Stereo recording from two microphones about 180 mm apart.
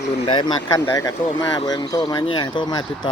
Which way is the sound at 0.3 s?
25° left (ahead or behind).